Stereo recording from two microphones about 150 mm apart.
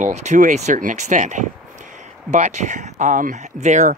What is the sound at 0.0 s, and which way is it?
Speech, 50° right (ahead or behind).